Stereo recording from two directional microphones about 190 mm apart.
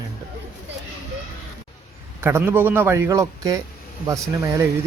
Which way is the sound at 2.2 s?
10° right (ahead or behind).